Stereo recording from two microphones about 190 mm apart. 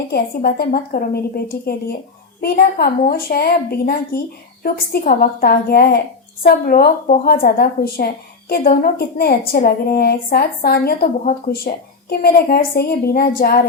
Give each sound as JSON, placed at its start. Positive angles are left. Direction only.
{"t": 0.1, "sound": "a woman's voice", "side_deg": 55}